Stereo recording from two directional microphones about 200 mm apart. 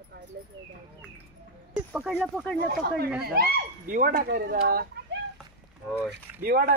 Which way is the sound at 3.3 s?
50° right (ahead or behind).